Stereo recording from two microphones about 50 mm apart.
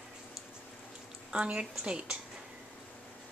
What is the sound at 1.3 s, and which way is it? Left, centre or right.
Speech, right.